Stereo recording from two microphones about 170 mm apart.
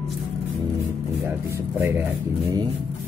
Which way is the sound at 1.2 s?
15° right (ahead or behind).